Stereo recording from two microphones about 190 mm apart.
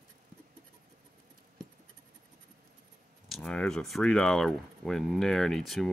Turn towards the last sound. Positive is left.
turn(degrees=0)  # may be behind; listen again after turning